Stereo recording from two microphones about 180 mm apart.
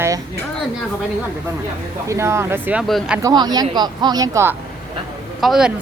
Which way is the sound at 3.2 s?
20° right (ahead or behind).